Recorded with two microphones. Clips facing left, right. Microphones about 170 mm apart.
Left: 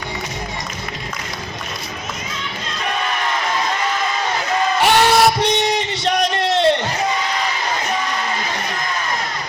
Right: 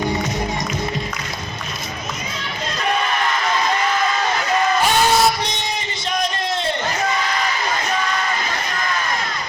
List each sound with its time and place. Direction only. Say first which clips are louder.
4.8 s music: left 6 dB; 70° left (ahead or behind)